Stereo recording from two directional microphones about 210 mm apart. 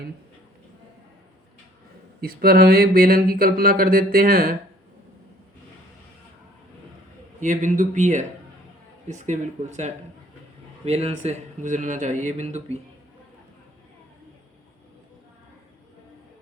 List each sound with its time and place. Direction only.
2.2 s speech: 45° right (ahead or behind)
7.3 s speech: 35° right (ahead or behind)